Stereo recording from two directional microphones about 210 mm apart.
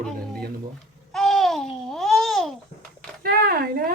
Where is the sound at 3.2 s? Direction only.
45° right (ahead or behind).